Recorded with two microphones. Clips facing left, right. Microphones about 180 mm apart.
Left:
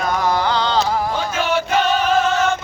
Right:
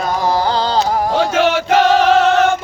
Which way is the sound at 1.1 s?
80° right.